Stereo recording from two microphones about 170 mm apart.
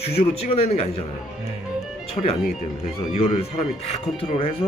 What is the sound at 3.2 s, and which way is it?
Speech, 35° left (ahead or behind).